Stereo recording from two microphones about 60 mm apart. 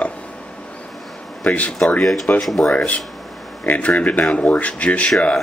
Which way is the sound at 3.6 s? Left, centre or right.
Left.